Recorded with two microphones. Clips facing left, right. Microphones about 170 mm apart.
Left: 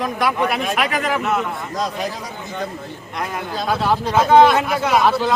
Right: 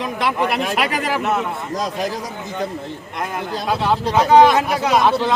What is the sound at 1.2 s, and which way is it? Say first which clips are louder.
Speech: even; 5° right (ahead or behind).